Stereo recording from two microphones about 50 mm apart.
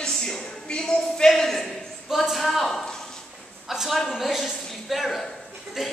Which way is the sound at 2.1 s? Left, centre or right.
Centre.